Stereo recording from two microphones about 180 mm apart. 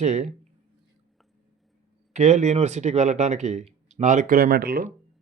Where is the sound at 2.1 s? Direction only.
40° right (ahead or behind).